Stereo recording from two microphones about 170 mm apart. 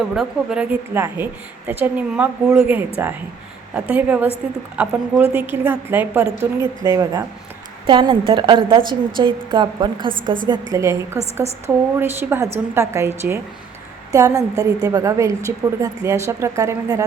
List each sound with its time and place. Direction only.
0.1 s a woman's voice: 5° right (ahead or behind)